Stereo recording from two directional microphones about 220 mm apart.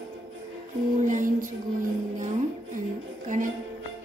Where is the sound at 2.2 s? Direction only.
35° right (ahead or behind).